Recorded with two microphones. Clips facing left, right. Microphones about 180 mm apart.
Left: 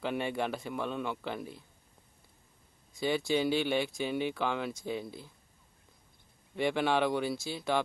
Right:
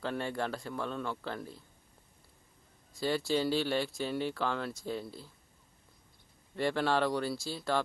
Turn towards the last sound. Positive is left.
turn(degrees=15)  # may be behind; listen again after turning